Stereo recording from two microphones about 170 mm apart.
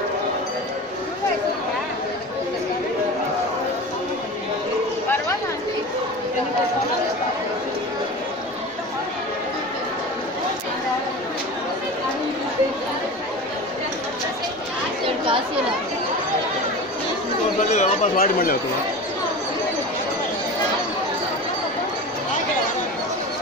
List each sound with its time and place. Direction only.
17.6 s chatter: 45° left (ahead or behind)
18.2 s speech: 60° left (ahead or behind)